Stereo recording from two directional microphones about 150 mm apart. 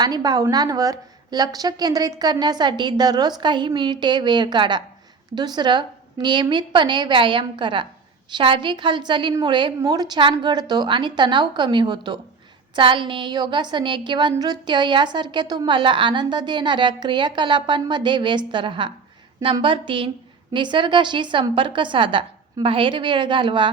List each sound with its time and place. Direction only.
0.0 s a woman's voice: 25° right (ahead or behind)